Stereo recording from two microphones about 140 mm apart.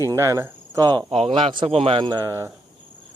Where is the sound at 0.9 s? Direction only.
35° right (ahead or behind).